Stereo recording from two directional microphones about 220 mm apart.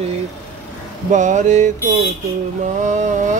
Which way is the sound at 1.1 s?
35° right (ahead or behind).